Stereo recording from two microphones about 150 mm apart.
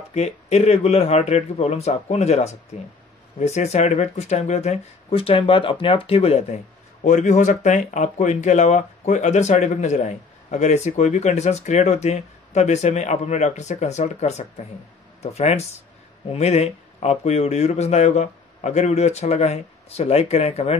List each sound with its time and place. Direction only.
0.1 s speech: 45° left (ahead or behind)